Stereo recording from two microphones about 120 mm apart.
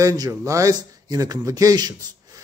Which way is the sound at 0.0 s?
25° right (ahead or behind).